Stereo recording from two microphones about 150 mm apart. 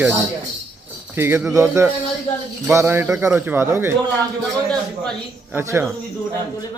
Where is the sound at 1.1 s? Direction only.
15° right (ahead or behind).